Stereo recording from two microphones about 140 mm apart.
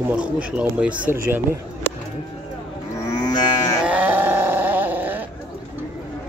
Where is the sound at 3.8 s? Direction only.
10° right (ahead or behind).